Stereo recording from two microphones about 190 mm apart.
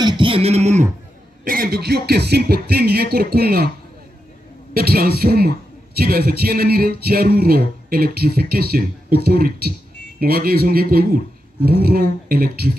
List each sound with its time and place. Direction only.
0.0 s beatboxing: 25° right (ahead or behind)
1.4 s speech: 50° right (ahead or behind)
4.7 s speech: 50° right (ahead or behind)